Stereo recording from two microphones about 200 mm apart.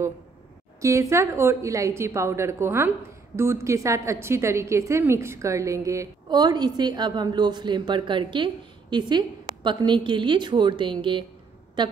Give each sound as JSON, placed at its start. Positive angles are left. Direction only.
{"t": 0.7, "sound": "a woman's voice", "side_deg": -15}